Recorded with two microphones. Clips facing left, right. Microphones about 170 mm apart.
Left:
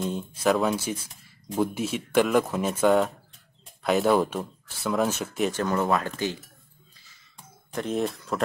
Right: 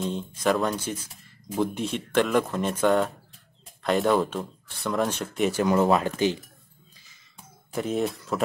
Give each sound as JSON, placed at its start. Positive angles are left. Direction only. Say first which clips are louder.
{"t": 0.0, "sound": "speech", "louder": "left 1 dB", "side_deg": 5}
{"t": 5.5, "sound": "speech", "louder": "right 6 dB", "side_deg": -10}
{"t": 7.7, "sound": "speech", "louder": "right 1 dB", "side_deg": -5}